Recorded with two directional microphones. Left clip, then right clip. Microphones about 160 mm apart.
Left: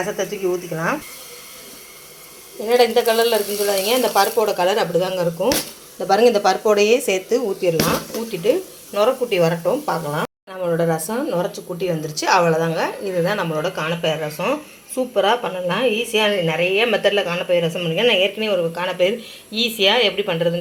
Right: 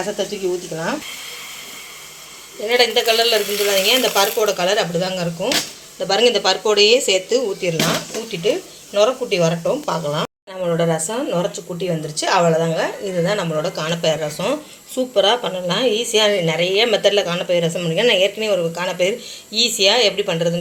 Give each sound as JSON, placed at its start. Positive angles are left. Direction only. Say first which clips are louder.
{"t": 0.7, "sound": "speech", "louder": "left 2 dB", "side_deg": 5}
{"t": 2.6, "sound": "speech", "louder": "even", "side_deg": 10}
{"t": 6.7, "sound": "speech", "louder": "right 3 dB", "side_deg": 50}
{"t": 8.3, "sound": "speech", "louder": "left 1 dB", "side_deg": 5}